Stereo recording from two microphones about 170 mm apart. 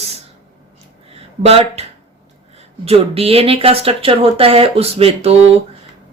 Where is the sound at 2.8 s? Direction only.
35° right (ahead or behind).